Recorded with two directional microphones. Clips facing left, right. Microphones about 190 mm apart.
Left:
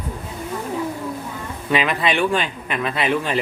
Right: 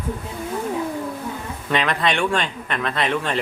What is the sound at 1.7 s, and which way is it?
Speech, 5° left (ahead or behind).